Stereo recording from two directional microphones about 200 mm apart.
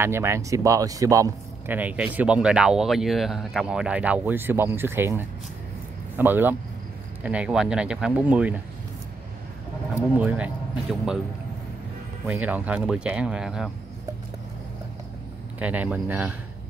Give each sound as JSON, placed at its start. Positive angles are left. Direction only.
{"t": 0.0, "sound": "a man's voice", "side_deg": -10}
{"t": 9.9, "sound": "a man's voice", "side_deg": -5}
{"t": 12.3, "sound": "speech", "side_deg": -5}
{"t": 15.6, "sound": "a man's voice", "side_deg": -5}